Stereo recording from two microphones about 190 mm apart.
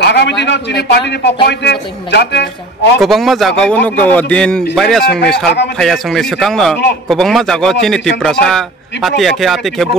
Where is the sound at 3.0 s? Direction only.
Centre (ahead or behind).